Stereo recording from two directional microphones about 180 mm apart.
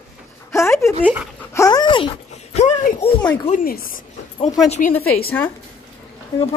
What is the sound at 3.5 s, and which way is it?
Speech, 55° left (ahead or behind).